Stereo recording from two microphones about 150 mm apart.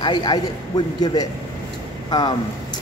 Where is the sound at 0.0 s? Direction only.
30° left (ahead or behind).